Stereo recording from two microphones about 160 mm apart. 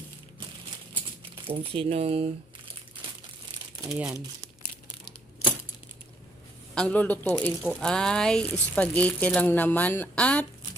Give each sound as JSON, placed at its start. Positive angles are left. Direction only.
{"t": 1.5, "sound": "speech", "side_deg": -35}
{"t": 3.8, "sound": "speech", "side_deg": -5}
{"t": 6.7, "sound": "speech", "side_deg": 10}